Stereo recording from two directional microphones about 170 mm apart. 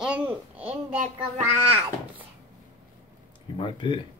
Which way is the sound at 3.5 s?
30° left (ahead or behind).